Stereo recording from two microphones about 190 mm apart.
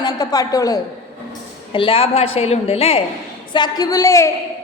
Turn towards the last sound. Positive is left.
turn(degrees=15)  # may be behind; listen again after turning